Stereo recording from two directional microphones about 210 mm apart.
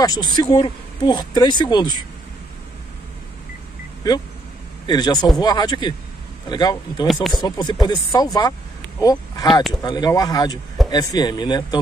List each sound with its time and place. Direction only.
0.0 s speech: 20° left (ahead or behind)
4.8 s speech: 20° left (ahead or behind)